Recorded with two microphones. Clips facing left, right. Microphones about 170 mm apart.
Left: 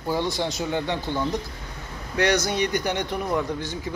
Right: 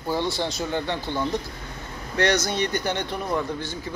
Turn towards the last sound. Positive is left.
turn(degrees=15)  # may be behind; listen again after turning